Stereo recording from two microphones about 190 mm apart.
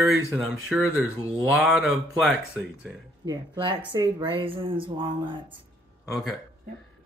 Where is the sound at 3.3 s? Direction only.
25° right (ahead or behind).